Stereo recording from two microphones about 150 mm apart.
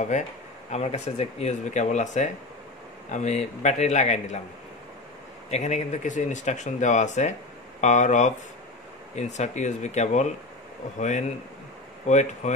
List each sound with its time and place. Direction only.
0.7 s speech: 45° left (ahead or behind)
5.5 s speech: 50° left (ahead or behind)